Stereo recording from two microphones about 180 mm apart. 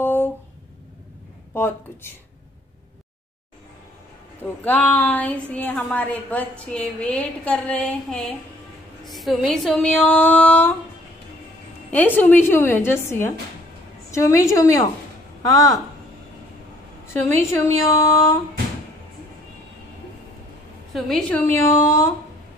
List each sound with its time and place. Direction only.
0.0 s a sound: 10° left (ahead or behind)
1.5 s a woman's voice: 15° left (ahead or behind)
4.4 s a woman's voice: 10° left (ahead or behind)
11.9 s a woman's voice: 10° left (ahead or behind)
17.1 s a woman's voice: 15° left (ahead or behind)
20.9 s a woman's voice: centre (ahead or behind)
21.6 s a woman's voice: 15° left (ahead or behind)